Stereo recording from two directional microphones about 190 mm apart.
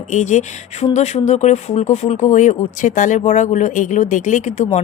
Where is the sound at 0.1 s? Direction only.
40° left (ahead or behind).